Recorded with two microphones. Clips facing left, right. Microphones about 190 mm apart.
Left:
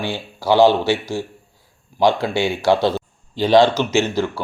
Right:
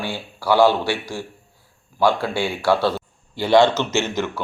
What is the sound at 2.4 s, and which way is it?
A man's voice, 20° left (ahead or behind).